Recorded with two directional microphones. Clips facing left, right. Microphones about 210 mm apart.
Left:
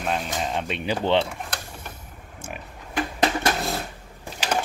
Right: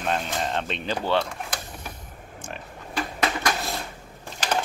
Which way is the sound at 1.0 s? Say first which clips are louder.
Left 3 dB; 20° left (ahead or behind).